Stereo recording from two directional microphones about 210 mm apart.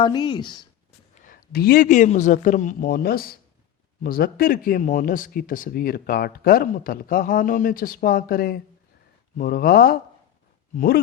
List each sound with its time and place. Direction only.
0.0 s speech: 20° left (ahead or behind)
1.2 s a man's voice: 45° left (ahead or behind)